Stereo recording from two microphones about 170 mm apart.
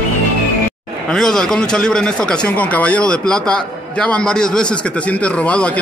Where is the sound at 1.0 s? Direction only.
5° left (ahead or behind).